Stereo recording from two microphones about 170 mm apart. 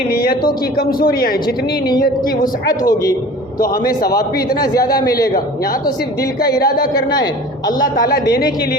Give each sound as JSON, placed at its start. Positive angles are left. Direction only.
{"t": 0.1, "sound": "speech", "side_deg": 60}
{"t": 2.8, "sound": "a man's voice", "side_deg": 20}
{"t": 3.6, "sound": "speech", "side_deg": 60}
{"t": 4.6, "sound": "a man's voice", "side_deg": 20}
{"t": 6.6, "sound": "speech", "side_deg": 60}
{"t": 6.9, "sound": "a man's voice", "side_deg": 25}